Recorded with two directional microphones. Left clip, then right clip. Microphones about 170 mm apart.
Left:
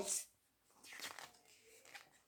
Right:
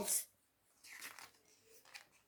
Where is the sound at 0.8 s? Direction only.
5° left (ahead or behind).